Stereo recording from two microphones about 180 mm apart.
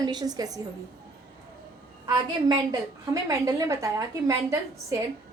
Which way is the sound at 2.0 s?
20° right (ahead or behind).